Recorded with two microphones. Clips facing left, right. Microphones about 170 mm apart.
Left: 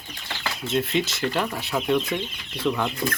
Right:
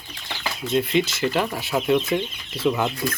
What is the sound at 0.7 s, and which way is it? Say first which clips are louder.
Speech: right 3 dB; centre (ahead or behind).